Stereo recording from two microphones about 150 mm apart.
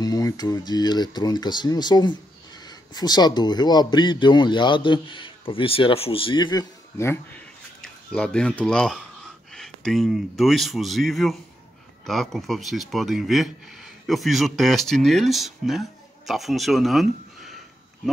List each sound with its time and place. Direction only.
0.0 s speech: 25° left (ahead or behind)
7.8 s speech: 5° left (ahead or behind)